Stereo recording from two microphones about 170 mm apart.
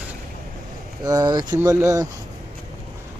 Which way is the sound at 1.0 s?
25° right (ahead or behind).